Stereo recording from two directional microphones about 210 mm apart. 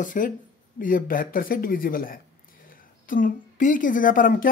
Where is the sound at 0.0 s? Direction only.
40° left (ahead or behind).